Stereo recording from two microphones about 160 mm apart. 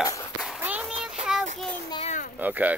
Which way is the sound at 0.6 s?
10° right (ahead or behind).